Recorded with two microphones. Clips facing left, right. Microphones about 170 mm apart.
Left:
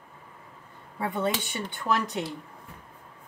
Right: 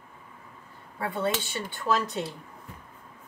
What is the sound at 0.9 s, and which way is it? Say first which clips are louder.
A woman's voice: left 1 dB; 20° left (ahead or behind).